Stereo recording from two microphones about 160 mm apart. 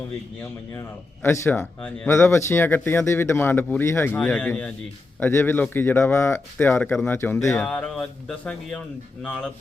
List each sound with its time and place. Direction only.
0.8 s speech: 15° left (ahead or behind)
7.7 s speech: 5° left (ahead or behind)